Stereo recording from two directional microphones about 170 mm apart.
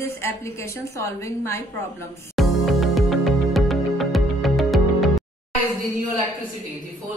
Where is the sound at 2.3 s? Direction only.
Centre (ahead or behind).